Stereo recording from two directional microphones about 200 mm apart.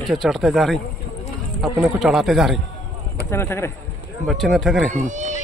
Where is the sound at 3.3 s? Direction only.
10° left (ahead or behind).